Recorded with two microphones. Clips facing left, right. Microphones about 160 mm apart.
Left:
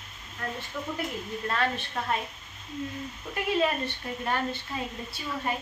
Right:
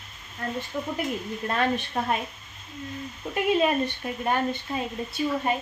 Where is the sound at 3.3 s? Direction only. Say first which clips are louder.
Right 4 dB; 20° right (ahead or behind).